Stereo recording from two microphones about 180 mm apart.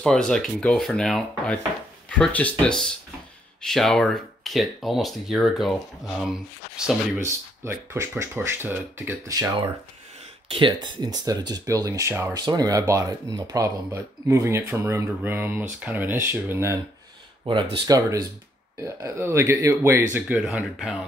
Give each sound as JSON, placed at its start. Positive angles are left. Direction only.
{"t": 0.0, "sound": "speech", "side_deg": 5}
{"t": 7.2, "sound": "speech", "side_deg": -15}
{"t": 17.7, "sound": "speech", "side_deg": -20}